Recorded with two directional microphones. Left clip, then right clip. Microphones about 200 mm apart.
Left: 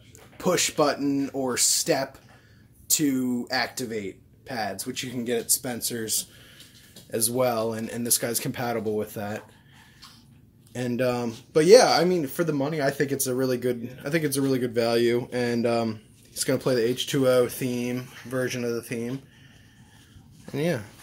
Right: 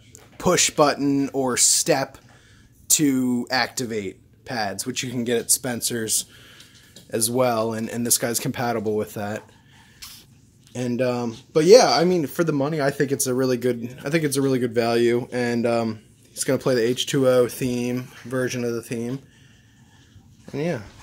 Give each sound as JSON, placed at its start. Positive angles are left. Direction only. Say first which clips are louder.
{"t": 0.4, "sound": "speech", "louder": "right 5 dB", "side_deg": -50}
{"t": 10.7, "sound": "speech", "louder": "right 2 dB", "side_deg": -30}
{"t": 20.4, "sound": "speech", "louder": "right 1 dB", "side_deg": 0}